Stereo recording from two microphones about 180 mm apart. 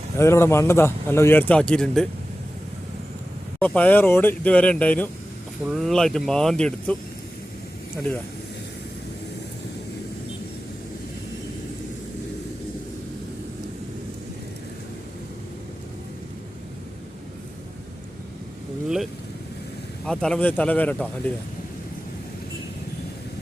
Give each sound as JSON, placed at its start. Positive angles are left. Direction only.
{"t": 0.2, "sound": "speech", "side_deg": 15}
{"t": 3.6, "sound": "speech", "side_deg": 10}
{"t": 20.1, "sound": "speech", "side_deg": 5}